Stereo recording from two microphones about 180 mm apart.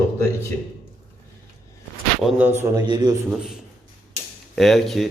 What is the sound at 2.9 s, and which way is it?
Speech, 25° right (ahead or behind).